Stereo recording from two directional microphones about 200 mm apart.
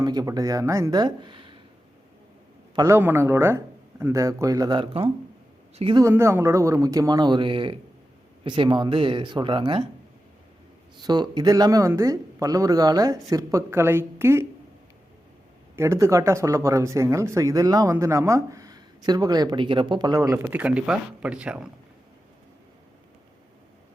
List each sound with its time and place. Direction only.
0.0 s speech: 20° right (ahead or behind)
2.7 s speech: 15° right (ahead or behind)
6.0 s speech: 15° right (ahead or behind)
10.9 s speech: 20° right (ahead or behind)
15.7 s speech: 15° right (ahead or behind)